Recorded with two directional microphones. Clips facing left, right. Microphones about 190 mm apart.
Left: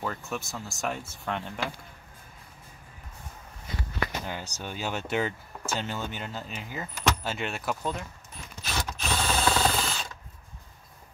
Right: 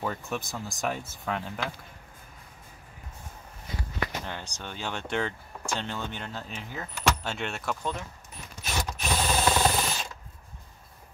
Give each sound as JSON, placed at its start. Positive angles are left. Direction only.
{"t": 0.0, "sound": "speech", "side_deg": -5}
{"t": 0.4, "sound": "speech", "side_deg": -15}
{"t": 0.7, "sound": "speech", "side_deg": 0}
{"t": 4.3, "sound": "speech", "side_deg": 5}
{"t": 8.7, "sound": "mechanisms", "side_deg": -15}